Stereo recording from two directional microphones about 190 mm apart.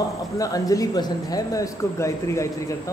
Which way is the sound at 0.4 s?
20° left (ahead or behind).